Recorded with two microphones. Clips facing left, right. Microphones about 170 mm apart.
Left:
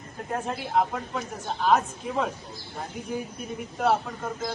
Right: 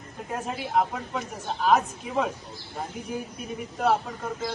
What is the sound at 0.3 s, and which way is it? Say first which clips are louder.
Speech: even; centre (ahead or behind).